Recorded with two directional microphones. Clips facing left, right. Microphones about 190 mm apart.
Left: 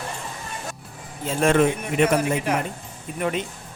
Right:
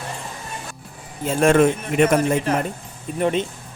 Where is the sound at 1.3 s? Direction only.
50° right (ahead or behind).